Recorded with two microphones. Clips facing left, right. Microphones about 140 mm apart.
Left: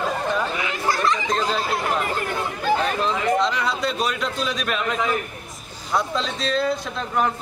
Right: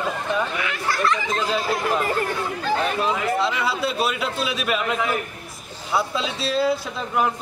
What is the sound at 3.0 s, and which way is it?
Speech, 5° right (ahead or behind).